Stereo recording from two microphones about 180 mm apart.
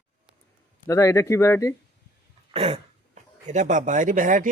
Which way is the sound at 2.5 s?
30° right (ahead or behind).